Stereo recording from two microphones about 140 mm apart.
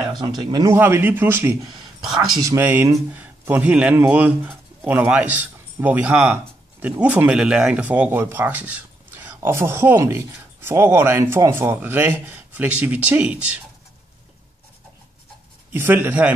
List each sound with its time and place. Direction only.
0.2 s speech: 30° right (ahead or behind)
0.7 s speech: 15° right (ahead or behind)
15.7 s speech: 15° right (ahead or behind)